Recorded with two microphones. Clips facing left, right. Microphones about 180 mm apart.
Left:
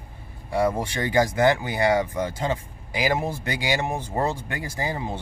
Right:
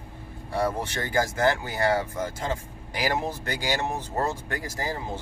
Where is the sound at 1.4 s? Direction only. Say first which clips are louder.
Left 4 dB; 15° left (ahead or behind).